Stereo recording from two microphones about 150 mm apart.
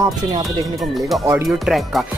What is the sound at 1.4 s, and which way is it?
Speech, centre (ahead or behind).